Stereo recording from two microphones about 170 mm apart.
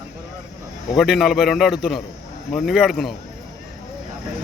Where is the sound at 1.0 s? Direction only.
Centre (ahead or behind).